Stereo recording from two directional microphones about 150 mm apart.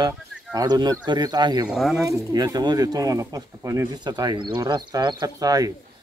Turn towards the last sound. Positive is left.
turn(degrees=-25)  # may be behind; listen again after turning